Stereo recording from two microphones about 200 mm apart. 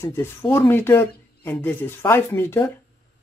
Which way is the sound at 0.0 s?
10° left (ahead or behind).